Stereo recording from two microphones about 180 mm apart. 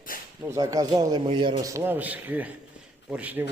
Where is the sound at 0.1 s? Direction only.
50° left (ahead or behind).